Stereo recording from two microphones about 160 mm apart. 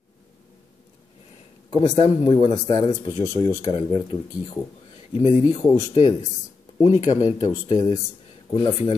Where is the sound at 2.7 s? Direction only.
30° left (ahead or behind).